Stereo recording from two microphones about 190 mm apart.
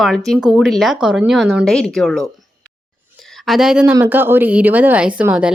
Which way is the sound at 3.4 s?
Centre (ahead or behind).